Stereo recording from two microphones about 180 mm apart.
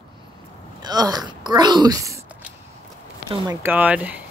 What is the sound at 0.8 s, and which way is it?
Speech, 20° right (ahead or behind).